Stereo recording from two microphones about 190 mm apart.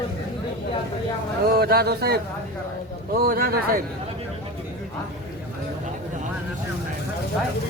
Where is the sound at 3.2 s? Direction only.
50° right (ahead or behind).